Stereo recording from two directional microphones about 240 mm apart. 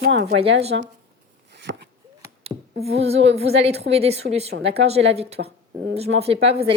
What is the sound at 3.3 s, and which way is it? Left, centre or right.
A woman's voice, right.